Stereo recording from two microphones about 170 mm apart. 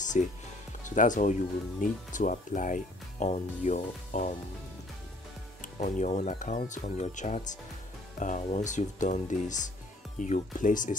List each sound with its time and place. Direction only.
0.0 s music: 45° left (ahead or behind)
0.8 s speech: 50° left (ahead or behind)
5.6 s speech: 45° left (ahead or behind)